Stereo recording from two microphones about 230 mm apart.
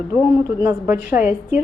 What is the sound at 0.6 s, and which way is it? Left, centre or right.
Speech, centre.